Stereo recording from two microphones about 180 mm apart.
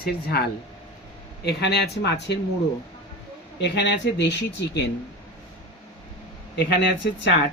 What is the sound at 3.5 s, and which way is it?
Speech, 70° left (ahead or behind).